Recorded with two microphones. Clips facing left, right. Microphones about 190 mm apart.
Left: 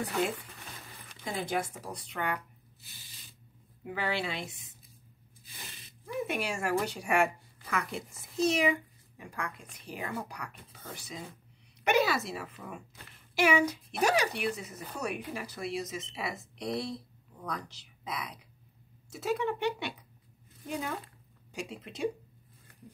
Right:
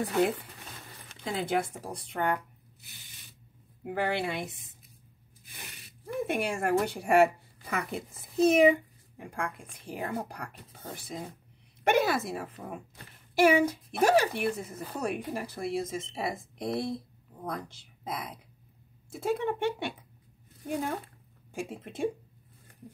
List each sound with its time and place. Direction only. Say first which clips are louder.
1.4 s speech: right 4 dB; 60° right (ahead or behind)
3.8 s a woman's voice: right 3 dB; 55° right (ahead or behind)